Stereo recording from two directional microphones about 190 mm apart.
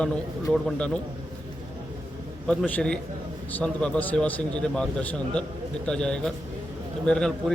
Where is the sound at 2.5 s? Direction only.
5° left (ahead or behind).